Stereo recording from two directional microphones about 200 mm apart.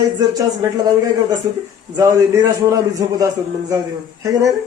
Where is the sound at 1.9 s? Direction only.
15° right (ahead or behind).